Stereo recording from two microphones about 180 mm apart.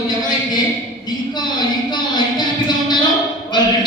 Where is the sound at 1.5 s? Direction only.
25° left (ahead or behind).